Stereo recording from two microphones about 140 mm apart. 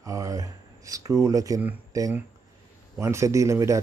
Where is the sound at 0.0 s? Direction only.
25° right (ahead or behind).